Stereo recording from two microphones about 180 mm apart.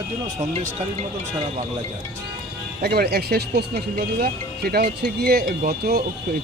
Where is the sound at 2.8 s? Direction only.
60° right (ahead or behind).